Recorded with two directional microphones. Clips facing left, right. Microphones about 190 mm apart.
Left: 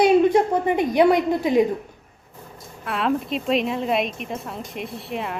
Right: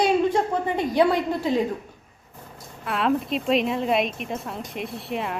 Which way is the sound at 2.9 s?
Centre (ahead or behind).